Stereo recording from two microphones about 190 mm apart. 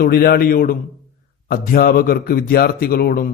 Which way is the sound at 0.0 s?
55° left (ahead or behind).